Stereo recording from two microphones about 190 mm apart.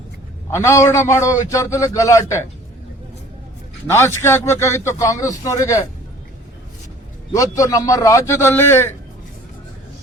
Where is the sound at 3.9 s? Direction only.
15° left (ahead or behind).